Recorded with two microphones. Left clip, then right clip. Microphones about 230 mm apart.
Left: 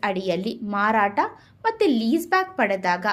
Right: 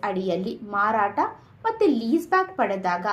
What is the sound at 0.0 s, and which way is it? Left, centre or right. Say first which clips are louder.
A woman's voice: left 2 dB; left.